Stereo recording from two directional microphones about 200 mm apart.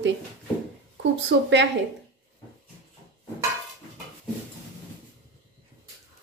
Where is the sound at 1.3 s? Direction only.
60° right (ahead or behind).